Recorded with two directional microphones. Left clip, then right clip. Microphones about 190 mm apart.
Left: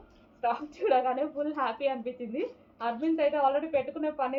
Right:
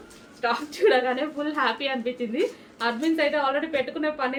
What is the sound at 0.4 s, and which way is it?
A woman's voice, 25° right (ahead or behind).